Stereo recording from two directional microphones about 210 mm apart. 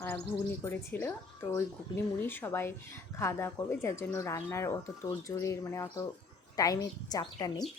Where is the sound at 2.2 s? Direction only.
10° left (ahead or behind).